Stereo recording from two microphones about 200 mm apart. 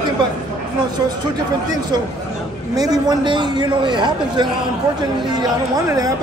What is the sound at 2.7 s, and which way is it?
A man's voice, 20° right (ahead or behind).